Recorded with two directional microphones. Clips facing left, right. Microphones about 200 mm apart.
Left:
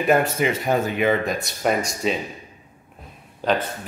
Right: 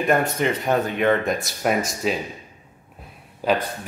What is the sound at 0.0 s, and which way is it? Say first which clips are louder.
Speech: left 1 dB; 5° left (ahead or behind).